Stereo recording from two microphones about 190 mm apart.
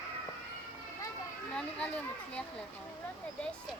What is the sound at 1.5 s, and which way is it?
Speech, 5° left (ahead or behind).